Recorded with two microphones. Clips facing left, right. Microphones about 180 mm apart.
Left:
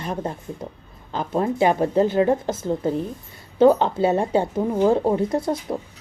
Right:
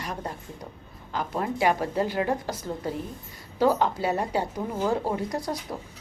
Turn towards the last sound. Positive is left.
turn(degrees=25)  # may be behind; listen again after turning